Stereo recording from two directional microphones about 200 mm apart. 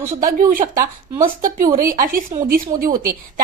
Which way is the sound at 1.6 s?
15° right (ahead or behind).